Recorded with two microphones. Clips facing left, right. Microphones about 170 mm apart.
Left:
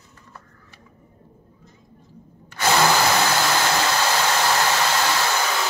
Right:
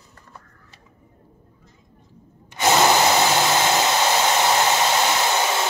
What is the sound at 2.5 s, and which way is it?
Drill, 20° right (ahead or behind).